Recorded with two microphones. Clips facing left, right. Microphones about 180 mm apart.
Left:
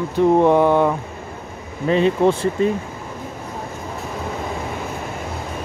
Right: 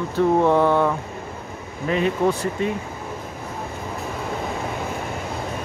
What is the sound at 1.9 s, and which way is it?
Speech, 30° left (ahead or behind).